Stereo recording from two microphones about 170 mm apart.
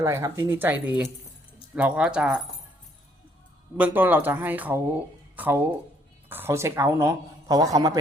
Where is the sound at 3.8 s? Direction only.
10° right (ahead or behind).